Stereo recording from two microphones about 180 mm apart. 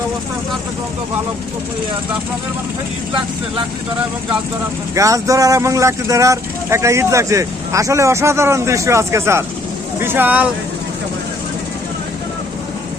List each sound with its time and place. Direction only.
4.9 s speech: 15° right (ahead or behind)